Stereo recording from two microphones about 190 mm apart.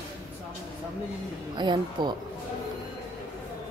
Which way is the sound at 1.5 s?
25° right (ahead or behind).